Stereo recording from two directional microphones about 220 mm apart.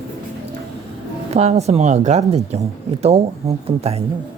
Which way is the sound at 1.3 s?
30° right (ahead or behind).